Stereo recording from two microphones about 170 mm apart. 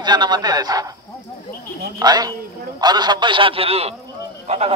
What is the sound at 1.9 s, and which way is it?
A man's voice, 25° right (ahead or behind).